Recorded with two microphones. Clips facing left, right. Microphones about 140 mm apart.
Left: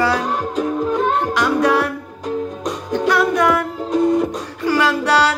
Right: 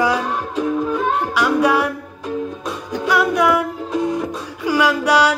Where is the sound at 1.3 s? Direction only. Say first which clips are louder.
Right 2 dB; 10° right (ahead or behind).